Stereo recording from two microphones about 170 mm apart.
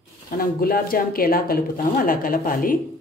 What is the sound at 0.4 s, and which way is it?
Speech, 60° left (ahead or behind).